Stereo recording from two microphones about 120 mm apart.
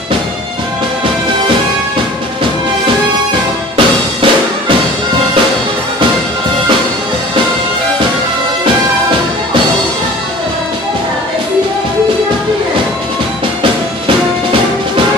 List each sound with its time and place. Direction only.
3.7 s music: 50° right (ahead or behind)